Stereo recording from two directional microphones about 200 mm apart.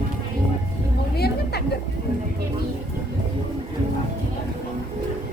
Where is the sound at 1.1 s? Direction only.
50° left (ahead or behind).